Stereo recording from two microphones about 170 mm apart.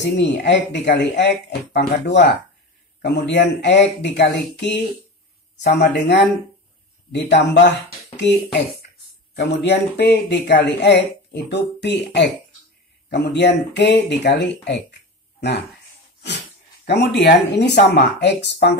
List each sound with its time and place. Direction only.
0.0 s speech: 90° left
9.3 s speech: 80° left
16.8 s speech: 80° left